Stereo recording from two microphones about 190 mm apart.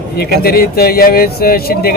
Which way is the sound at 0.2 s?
55° left (ahead or behind).